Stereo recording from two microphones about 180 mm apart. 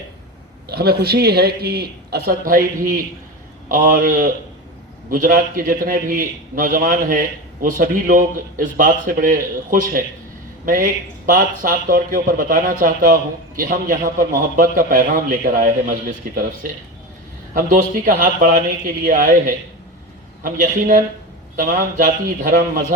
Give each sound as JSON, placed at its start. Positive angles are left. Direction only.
{"t": 0.7, "sound": "a man's voice", "side_deg": -60}